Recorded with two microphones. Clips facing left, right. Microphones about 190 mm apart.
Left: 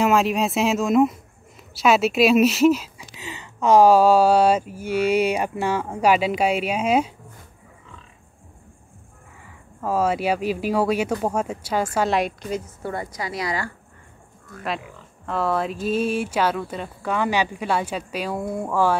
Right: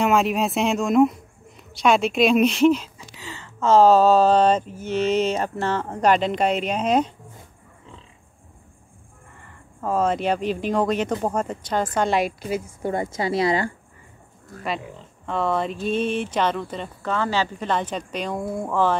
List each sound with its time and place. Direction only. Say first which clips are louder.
0.0 s a woman's voice: left 1 dB; centre (ahead or behind)
3.2 s speech: left 1 dB; 20° left (ahead or behind)
9.3 s a woman's voice: left 1 dB; 5° left (ahead or behind)
12.9 s speech: right 7 dB; 25° right (ahead or behind)
14.8 s speech: right 4 dB; 20° right (ahead or behind)
15.2 s a woman's voice: even; 5° left (ahead or behind)